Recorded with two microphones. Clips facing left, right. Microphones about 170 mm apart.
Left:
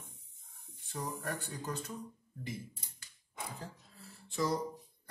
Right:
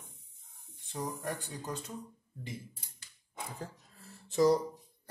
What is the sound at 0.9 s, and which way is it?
Speech, 20° right (ahead or behind).